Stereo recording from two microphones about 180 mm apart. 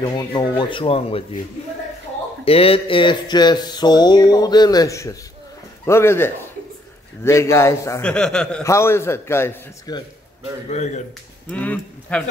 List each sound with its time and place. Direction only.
0.0 s speech: 25° left (ahead or behind)
2.4 s a man's voice: 30° left (ahead or behind); by 8.0 s 15° left (ahead or behind)
8.0 s a man's voice: 5° left (ahead or behind)
10.7 s speech: 40° left (ahead or behind)
11.5 s a man's voice: 10° left (ahead or behind)